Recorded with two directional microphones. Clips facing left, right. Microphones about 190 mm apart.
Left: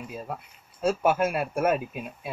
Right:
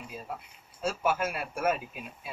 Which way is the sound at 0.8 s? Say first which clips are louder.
Left 6 dB; 55° left (ahead or behind).